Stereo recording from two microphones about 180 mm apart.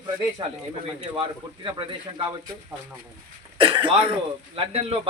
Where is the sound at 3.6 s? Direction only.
30° right (ahead or behind).